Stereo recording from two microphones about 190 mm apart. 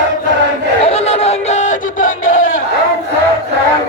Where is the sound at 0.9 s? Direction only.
35° left (ahead or behind).